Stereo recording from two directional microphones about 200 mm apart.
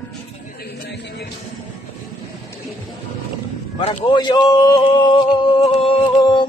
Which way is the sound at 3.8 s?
25° left (ahead or behind).